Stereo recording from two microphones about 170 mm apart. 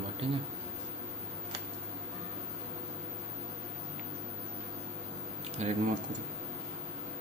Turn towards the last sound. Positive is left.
turn(degrees=-40)  # may be behind; listen again after turning